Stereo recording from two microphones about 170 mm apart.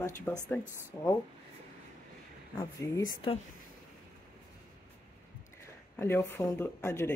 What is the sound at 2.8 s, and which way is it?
Speech, 25° left (ahead or behind).